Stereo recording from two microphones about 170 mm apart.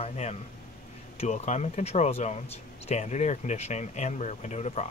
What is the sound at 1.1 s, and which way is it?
Speech, 40° left (ahead or behind).